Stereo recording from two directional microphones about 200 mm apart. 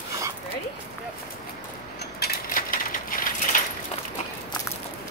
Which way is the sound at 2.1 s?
50° left (ahead or behind).